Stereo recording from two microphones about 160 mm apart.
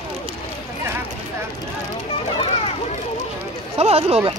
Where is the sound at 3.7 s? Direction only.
40° right (ahead or behind).